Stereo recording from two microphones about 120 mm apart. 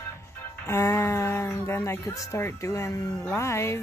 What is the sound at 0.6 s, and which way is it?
A woman's voice, 20° left (ahead or behind).